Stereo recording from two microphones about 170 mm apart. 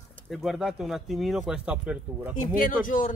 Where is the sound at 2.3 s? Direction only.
55° left (ahead or behind).